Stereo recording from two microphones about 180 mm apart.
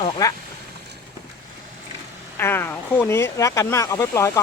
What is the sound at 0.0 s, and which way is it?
Speech, 20° left (ahead or behind).